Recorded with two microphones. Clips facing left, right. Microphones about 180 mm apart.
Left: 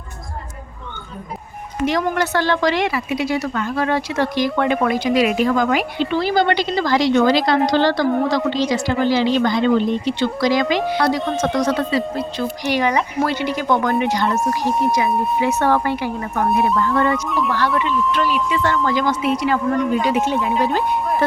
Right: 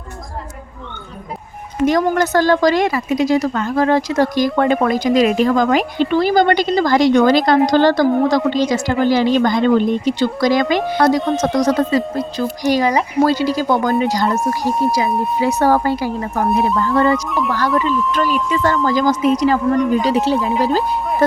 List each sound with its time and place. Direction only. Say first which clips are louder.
1.9 s a woman's voice: right 4 dB; 45° right (ahead or behind)
15.4 s a woman's voice: right 4 dB; 35° right (ahead or behind)
18.5 s a woman's voice: right 4 dB; 40° right (ahead or behind)